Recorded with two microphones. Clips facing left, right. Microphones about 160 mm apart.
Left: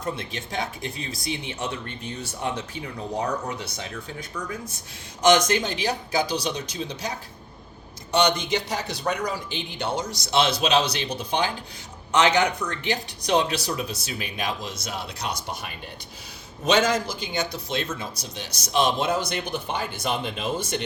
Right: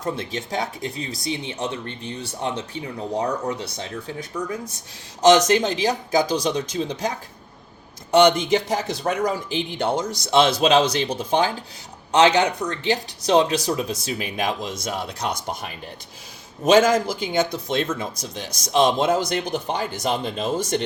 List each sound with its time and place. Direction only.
0.0 s speech: 40° right (ahead or behind)
5.2 s speech: 35° right (ahead or behind)
8.2 s speech: 50° right (ahead or behind)
12.1 s speech: 30° right (ahead or behind); by 15.4 s 50° right (ahead or behind)
16.6 s speech: 45° right (ahead or behind)